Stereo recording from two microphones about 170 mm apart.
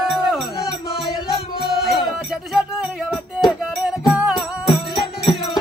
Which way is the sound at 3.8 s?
5° right (ahead or behind).